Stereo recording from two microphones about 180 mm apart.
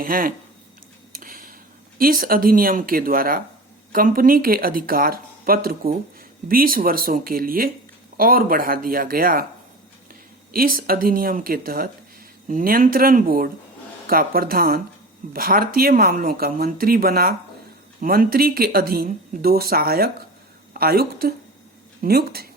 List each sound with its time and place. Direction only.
0.0 s speech: 50° right (ahead or behind)
1.1 s a sound: 50° right (ahead or behind)
2.0 s speech: 50° right (ahead or behind)
10.5 s a woman's voice: 55° right (ahead or behind)